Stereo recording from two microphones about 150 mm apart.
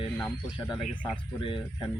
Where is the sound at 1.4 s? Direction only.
35° left (ahead or behind).